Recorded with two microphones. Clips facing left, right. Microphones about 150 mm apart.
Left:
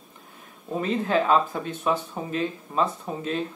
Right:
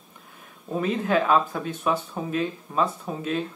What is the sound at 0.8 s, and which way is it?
Speech, 25° left (ahead or behind).